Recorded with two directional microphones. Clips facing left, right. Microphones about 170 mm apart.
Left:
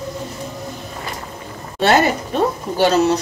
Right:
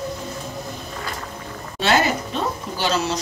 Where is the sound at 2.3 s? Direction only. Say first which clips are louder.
Left 8 dB; 55° left (ahead or behind).